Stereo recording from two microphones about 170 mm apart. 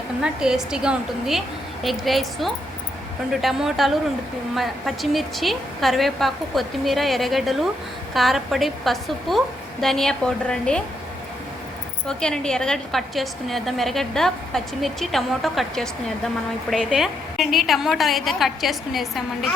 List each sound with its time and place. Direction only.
0.2 s a woman's voice: 5° right (ahead or behind)
12.0 s a woman's voice: 5° left (ahead or behind)